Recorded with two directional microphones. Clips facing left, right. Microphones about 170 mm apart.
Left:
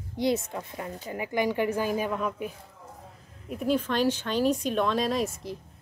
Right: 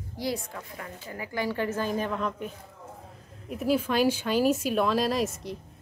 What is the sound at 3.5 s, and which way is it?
Speech, 5° right (ahead or behind).